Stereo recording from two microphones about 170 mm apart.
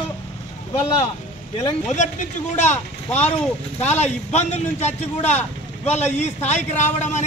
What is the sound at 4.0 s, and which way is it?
Speech, 40° left (ahead or behind).